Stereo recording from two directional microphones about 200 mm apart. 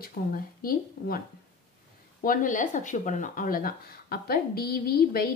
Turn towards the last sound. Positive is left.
turn(degrees=50)  # may be behind; listen again after turning